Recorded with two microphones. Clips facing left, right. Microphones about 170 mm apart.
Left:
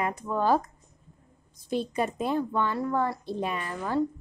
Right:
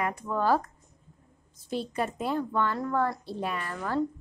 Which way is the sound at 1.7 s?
15° left (ahead or behind).